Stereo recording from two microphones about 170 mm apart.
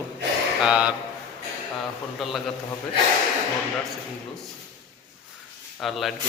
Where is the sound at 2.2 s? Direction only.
Centre (ahead or behind).